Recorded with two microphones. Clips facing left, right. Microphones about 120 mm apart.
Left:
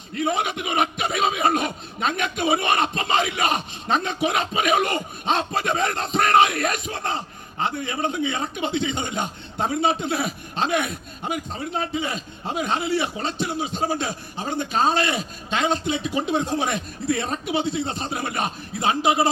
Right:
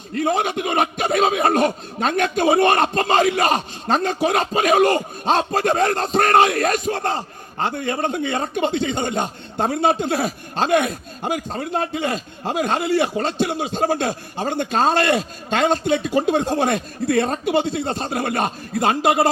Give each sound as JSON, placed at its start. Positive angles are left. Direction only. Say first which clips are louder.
{"t": 0.1, "sound": "a man's voice", "louder": "right 4 dB", "side_deg": -45}
{"t": 13.5, "sound": "a man's voice", "louder": "right 4 dB", "side_deg": -65}
{"t": 15.4, "sound": "a man's voice", "louder": "right 5 dB", "side_deg": -50}